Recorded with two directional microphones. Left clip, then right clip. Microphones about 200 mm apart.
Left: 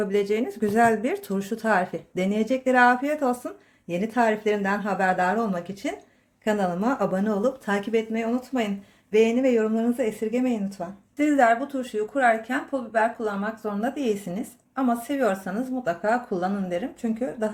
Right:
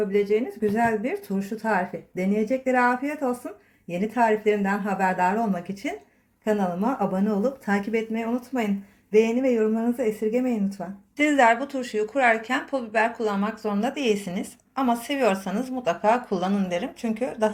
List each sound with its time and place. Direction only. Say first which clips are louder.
0.1 s speech: right 1 dB; 30° left (ahead or behind); by 10.8 s centre (ahead or behind)
11.2 s speech: right 1 dB; 20° left (ahead or behind)